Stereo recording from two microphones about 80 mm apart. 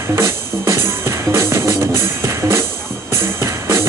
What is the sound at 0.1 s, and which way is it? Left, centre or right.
Music, right.